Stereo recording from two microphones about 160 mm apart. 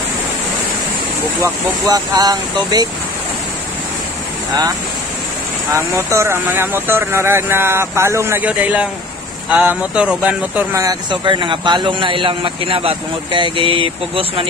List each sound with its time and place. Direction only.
1.4 s speech: 25° right (ahead or behind)
5.8 s speech: 15° right (ahead or behind)
10.7 s a man's voice: 20° right (ahead or behind)